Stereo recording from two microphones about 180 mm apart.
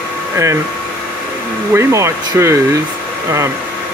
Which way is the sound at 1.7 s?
15° right (ahead or behind).